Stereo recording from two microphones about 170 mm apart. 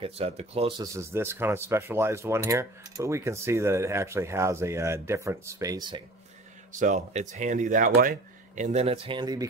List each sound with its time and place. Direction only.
0.0 s speech: 35° right (ahead or behind)
0.8 s speech: 15° right (ahead or behind)
6.7 s speech: 45° right (ahead or behind); by 9.5 s 25° right (ahead or behind)